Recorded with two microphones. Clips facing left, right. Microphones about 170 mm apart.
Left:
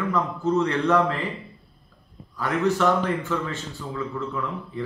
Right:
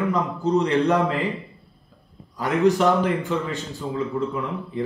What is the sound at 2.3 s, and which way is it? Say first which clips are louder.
A man's voice: right 4 dB; 15° right (ahead or behind).